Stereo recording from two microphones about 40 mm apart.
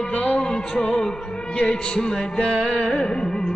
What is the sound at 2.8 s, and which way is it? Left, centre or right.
Music, left.